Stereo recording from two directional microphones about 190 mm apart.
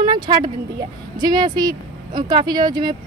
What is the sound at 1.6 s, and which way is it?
Speech, 45° right (ahead or behind).